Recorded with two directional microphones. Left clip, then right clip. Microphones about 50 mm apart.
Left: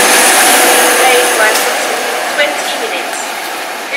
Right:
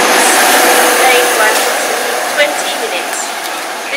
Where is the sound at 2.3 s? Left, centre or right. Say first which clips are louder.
Right 1 dB; right.